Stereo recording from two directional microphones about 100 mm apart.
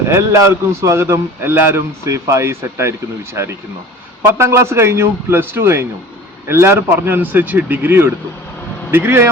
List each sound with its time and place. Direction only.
0.1 s a man's voice: 30° right (ahead or behind)
4.4 s a man's voice: 25° right (ahead or behind)